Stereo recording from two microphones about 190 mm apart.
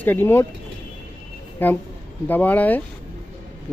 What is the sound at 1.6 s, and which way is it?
Speech, 10° left (ahead or behind).